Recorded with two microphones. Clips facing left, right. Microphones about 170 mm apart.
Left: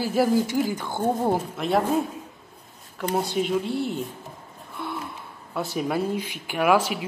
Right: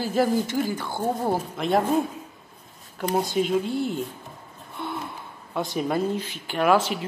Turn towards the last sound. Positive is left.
turn(degrees=10)  # may be behind; listen again after turning